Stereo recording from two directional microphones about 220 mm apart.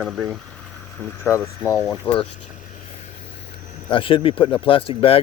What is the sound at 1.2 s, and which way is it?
Speech, 15° left (ahead or behind).